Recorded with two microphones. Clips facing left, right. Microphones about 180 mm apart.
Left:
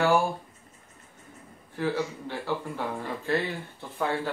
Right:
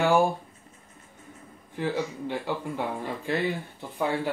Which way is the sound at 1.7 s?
15° right (ahead or behind).